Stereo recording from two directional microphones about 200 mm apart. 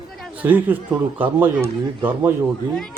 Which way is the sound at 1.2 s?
10° right (ahead or behind).